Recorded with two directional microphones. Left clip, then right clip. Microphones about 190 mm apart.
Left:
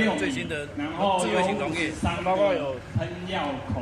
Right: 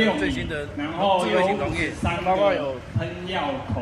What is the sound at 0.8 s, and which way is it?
Speech, 50° left (ahead or behind).